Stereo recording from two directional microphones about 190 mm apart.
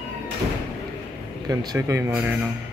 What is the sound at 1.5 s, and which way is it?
Speech, 20° right (ahead or behind).